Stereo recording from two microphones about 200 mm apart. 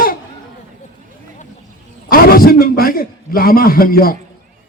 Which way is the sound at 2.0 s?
45° left (ahead or behind).